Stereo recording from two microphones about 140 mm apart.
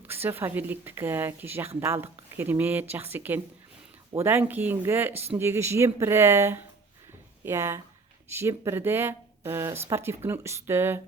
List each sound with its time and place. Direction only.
0.3 s speech: 15° right (ahead or behind)